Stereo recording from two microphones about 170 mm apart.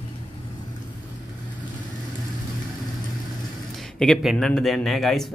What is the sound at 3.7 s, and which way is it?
Speech, 5° left (ahead or behind).